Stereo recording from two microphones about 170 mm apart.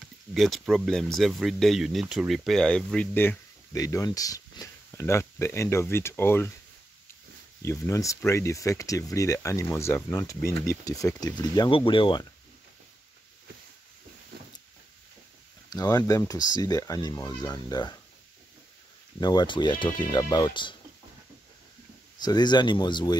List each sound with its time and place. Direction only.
0.3 s speech: centre (ahead or behind)
7.6 s speech: 15° left (ahead or behind)
15.7 s speech: 20° left (ahead or behind)
19.1 s speech: 25° left (ahead or behind)
22.2 s speech: 25° left (ahead or behind)